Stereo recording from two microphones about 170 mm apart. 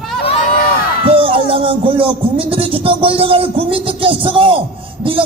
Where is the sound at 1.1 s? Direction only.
30° right (ahead or behind).